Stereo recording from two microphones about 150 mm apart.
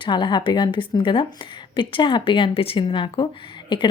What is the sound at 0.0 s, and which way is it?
A woman's voice, 30° left (ahead or behind).